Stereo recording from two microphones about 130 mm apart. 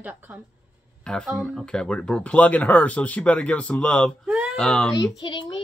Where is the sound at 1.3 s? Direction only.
5° right (ahead or behind).